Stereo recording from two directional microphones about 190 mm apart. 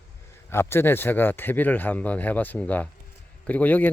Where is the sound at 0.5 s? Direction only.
15° left (ahead or behind).